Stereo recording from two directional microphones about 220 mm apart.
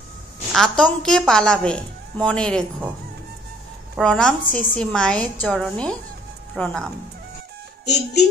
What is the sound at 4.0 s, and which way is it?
A woman's voice, 5° left (ahead or behind).